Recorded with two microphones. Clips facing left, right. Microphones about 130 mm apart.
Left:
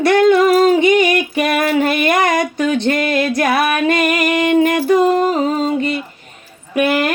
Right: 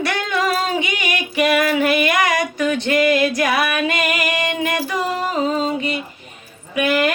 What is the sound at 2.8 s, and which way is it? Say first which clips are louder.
Music: even; 50° left (ahead or behind).